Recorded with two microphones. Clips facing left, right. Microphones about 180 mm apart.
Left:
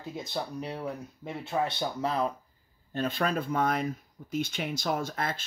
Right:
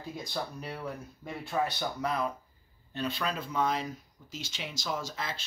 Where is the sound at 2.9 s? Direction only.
50° left (ahead or behind).